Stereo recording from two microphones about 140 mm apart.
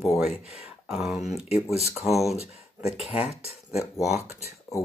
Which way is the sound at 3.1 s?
45° left (ahead or behind).